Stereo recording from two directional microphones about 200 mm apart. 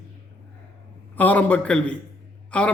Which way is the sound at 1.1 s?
10° left (ahead or behind).